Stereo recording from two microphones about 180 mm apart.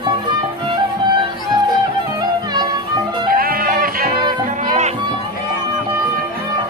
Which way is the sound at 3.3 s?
55° right (ahead or behind).